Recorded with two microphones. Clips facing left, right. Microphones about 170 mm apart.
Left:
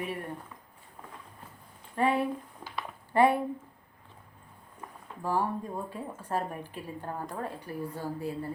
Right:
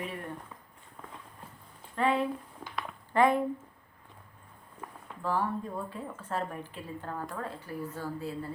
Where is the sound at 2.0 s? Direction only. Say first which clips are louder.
Left 1 dB; 10° left (ahead or behind).